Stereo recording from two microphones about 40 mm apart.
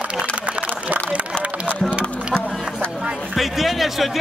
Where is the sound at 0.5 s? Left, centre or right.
Right.